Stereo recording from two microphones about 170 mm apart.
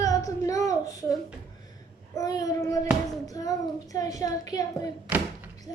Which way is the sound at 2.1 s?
20° left (ahead or behind).